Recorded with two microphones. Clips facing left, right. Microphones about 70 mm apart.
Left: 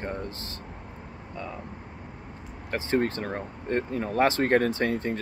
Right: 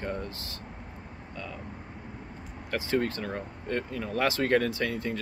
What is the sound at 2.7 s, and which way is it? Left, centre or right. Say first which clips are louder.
Speech: left 2 dB; left.